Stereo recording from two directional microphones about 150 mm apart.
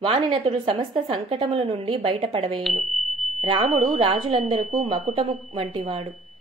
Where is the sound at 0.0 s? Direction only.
40° right (ahead or behind).